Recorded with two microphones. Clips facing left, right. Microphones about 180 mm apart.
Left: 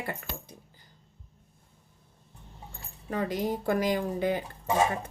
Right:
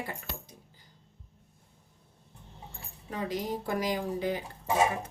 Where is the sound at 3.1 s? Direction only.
55° left (ahead or behind).